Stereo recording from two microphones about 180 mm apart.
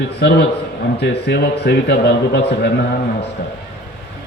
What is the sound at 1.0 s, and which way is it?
A man's voice, 65° left (ahead or behind).